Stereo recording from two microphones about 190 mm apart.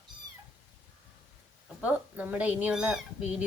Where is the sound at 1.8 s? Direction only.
5° right (ahead or behind).